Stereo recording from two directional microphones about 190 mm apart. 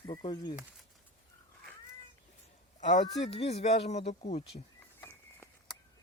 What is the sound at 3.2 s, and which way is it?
Speech, 35° left (ahead or behind).